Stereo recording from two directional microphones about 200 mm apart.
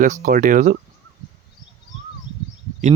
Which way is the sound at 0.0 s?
40° right (ahead or behind).